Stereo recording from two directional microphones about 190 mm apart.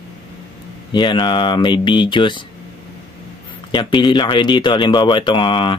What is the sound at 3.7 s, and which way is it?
Speech, 25° left (ahead or behind).